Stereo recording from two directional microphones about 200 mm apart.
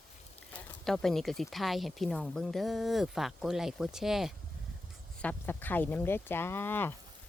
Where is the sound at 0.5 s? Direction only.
Centre (ahead or behind).